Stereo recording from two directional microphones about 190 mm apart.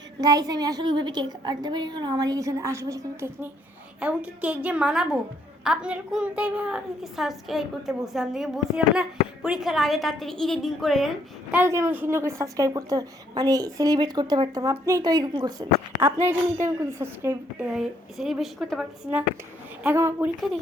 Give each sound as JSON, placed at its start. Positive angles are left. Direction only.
{"t": 0.2, "sound": "a woman's voice", "side_deg": -20}
{"t": 11.5, "sound": "a woman's voice", "side_deg": -15}